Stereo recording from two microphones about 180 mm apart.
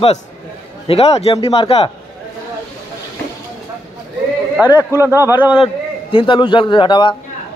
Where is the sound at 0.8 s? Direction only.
35° left (ahead or behind).